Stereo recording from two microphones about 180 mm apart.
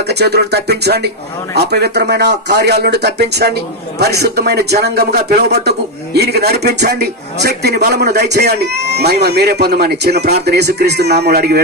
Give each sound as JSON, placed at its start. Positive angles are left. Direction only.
{"t": 0.1, "sound": "a man's voice", "side_deg": -65}